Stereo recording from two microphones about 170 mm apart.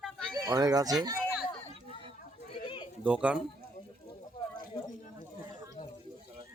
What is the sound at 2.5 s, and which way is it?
Goat, 30° left (ahead or behind).